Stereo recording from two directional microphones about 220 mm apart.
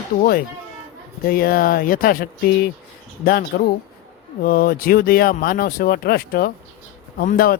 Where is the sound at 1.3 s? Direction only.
40° left (ahead or behind).